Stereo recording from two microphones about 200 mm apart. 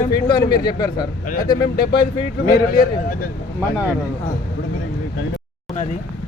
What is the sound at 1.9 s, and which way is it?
Speech, 25° left (ahead or behind).